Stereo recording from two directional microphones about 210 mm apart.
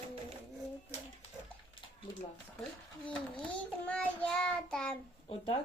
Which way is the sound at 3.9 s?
5° left (ahead or behind).